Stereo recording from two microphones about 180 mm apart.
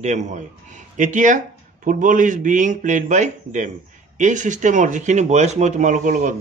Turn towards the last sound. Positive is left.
turn(degrees=-45)  # may be behind; listen again after turning